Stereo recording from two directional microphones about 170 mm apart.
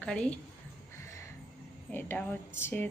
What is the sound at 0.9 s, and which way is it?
Music, 15° left (ahead or behind).